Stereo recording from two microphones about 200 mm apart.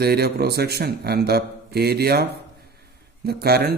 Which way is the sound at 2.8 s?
50° right (ahead or behind).